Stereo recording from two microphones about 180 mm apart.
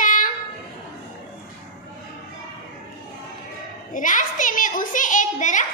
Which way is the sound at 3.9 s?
45° left (ahead or behind).